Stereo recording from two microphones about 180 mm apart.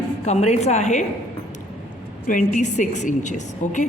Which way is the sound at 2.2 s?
50° left (ahead or behind).